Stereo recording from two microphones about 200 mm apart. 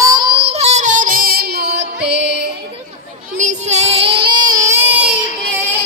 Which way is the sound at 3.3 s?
35° right (ahead or behind).